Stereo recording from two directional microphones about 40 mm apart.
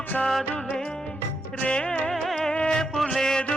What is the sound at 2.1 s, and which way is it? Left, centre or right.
Music, centre.